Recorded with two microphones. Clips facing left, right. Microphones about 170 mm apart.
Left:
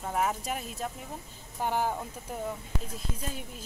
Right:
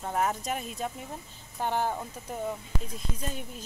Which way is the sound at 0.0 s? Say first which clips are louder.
Right 1 dB; 5° left (ahead or behind).